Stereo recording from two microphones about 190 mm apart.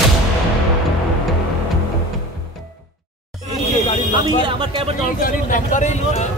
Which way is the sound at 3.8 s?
35° left (ahead or behind).